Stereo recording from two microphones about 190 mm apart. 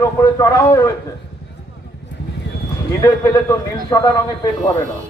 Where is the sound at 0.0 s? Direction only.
15° left (ahead or behind).